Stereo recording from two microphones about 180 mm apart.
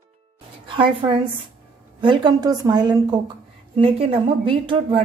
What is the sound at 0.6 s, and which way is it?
A woman's voice, 30° right (ahead or behind).